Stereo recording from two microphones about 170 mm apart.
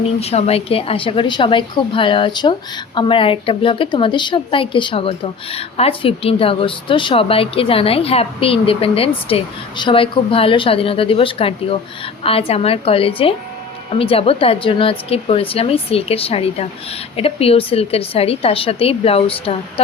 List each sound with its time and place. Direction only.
0.2 s a woman's voice: 40° left (ahead or behind)